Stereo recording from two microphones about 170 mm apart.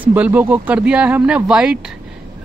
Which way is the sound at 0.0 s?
10° right (ahead or behind).